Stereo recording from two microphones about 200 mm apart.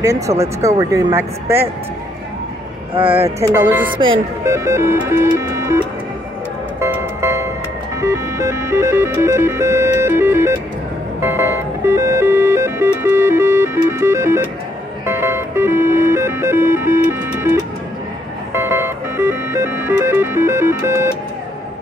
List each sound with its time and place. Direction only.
0.0 s music: 15° right (ahead or behind)
2.9 s a sound: 25° right (ahead or behind)
3.2 s music: 15° right (ahead or behind)
6.8 s music: 15° right (ahead or behind)